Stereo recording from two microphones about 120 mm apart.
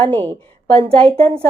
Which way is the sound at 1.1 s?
55° right (ahead or behind).